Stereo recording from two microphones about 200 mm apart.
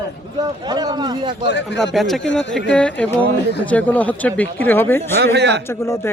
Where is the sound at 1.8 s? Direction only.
Centre (ahead or behind).